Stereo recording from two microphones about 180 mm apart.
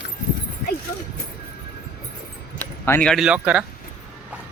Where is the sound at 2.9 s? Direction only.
5° left (ahead or behind).